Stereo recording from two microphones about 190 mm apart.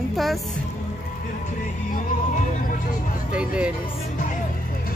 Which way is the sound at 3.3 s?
5° right (ahead or behind).